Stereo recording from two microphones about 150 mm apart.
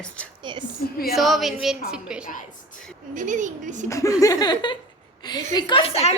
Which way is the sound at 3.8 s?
20° left (ahead or behind).